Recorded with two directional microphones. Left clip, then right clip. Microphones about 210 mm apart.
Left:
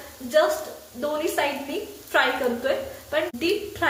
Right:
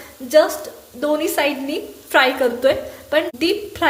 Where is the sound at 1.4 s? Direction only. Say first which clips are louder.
Right 5 dB; 45° right (ahead or behind).